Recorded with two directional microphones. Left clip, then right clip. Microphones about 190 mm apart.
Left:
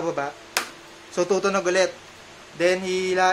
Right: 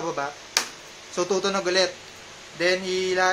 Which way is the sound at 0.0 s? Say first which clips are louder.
Left 2 dB; 20° left (ahead or behind).